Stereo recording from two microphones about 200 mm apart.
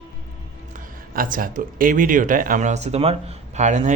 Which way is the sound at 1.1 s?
45° right (ahead or behind).